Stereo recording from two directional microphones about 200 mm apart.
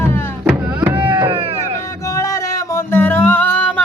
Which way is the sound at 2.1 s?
15° left (ahead or behind).